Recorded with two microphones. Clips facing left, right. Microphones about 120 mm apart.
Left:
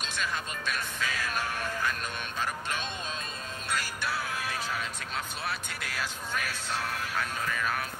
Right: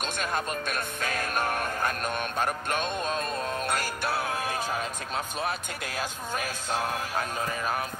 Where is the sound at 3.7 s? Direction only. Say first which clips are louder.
Right 4 dB; 50° right (ahead or behind).